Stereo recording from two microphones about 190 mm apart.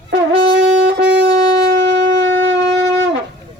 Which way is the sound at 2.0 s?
80° right.